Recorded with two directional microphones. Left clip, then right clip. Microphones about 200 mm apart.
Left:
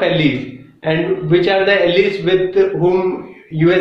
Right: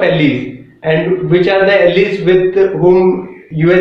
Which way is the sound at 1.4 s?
20° left (ahead or behind).